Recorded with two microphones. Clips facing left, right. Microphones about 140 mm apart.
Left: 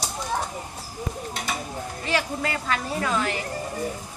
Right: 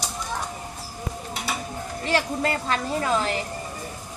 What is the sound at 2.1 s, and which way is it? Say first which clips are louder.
A woman's voice: right 3 dB; 30° right (ahead or behind).